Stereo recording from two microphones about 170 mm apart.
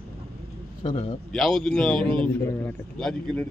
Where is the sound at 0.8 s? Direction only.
35° left (ahead or behind).